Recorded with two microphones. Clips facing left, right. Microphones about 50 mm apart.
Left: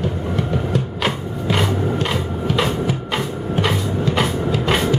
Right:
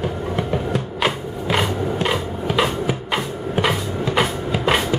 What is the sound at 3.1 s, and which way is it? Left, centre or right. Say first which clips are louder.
Music: left 1 dB; centre.